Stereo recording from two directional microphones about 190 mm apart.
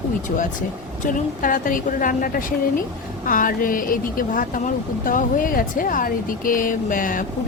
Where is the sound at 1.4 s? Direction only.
45° left (ahead or behind).